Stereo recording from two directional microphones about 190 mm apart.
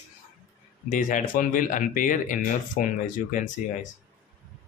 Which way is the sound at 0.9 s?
45° left (ahead or behind).